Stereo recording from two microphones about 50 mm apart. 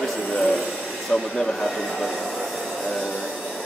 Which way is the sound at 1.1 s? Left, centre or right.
Centre.